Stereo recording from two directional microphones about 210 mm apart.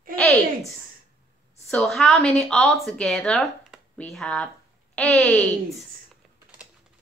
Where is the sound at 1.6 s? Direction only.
5° left (ahead or behind).